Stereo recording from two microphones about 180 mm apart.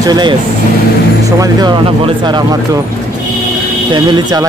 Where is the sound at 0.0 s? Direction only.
25° right (ahead or behind).